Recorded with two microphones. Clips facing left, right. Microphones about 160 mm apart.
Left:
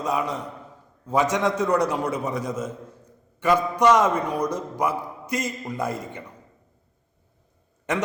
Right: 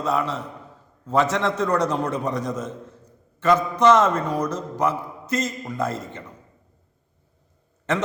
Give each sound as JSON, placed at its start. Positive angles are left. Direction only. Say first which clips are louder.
{"t": 0.0, "sound": "a man's voice", "louder": "right 2 dB", "side_deg": 15}